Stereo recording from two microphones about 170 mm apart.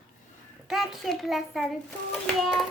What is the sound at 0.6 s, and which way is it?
A child's voice, centre (ahead or behind).